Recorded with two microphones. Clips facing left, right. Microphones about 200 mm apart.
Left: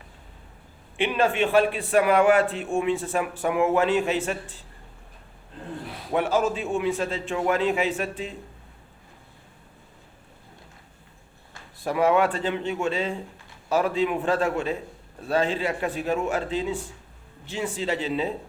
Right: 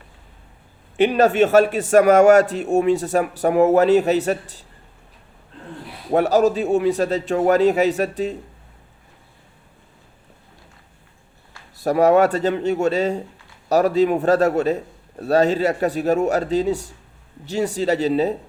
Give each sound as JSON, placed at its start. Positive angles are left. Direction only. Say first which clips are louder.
{"t": 0.9, "sound": "a man's voice", "louder": "right 8 dB", "side_deg": -40}
{"t": 6.1, "sound": "a man's voice", "louder": "right 7 dB", "side_deg": -40}
{"t": 11.8, "sound": "a man's voice", "louder": "right 6 dB", "side_deg": -40}